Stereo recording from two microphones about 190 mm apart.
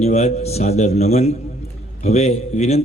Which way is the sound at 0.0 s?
35° left (ahead or behind).